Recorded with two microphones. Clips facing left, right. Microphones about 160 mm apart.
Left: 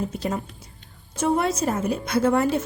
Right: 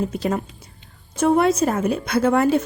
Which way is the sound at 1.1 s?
60° right (ahead or behind).